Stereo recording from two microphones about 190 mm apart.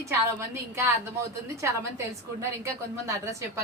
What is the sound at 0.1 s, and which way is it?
Speech, 15° right (ahead or behind).